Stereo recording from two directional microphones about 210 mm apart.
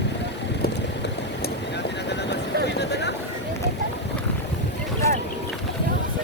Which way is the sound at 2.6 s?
55° left (ahead or behind).